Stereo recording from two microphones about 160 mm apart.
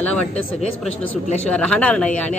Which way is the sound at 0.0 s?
10° left (ahead or behind).